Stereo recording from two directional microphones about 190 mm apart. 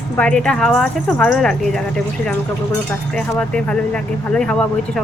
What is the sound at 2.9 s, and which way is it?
Speech, 5° left (ahead or behind).